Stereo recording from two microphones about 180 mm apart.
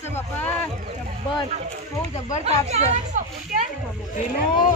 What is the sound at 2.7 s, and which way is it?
Speech, 40° right (ahead or behind).